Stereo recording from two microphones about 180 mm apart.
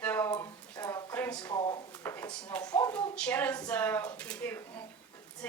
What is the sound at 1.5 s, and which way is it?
Drawer open or close, 25° left (ahead or behind).